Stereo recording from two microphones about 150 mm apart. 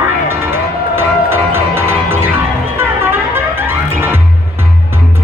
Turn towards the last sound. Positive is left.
turn(degrees=-15)  # may be behind; listen again after turning